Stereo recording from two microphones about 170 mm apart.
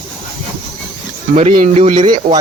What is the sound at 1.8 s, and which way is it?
Speech, 35° right (ahead or behind).